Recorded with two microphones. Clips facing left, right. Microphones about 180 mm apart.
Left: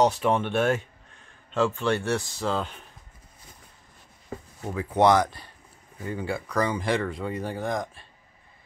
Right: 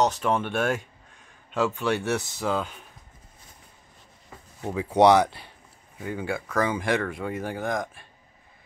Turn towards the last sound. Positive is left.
turn(degrees=0)  # may be behind; listen again after turning